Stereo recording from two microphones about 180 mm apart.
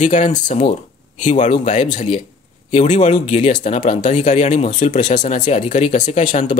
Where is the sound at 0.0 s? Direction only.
40° left (ahead or behind).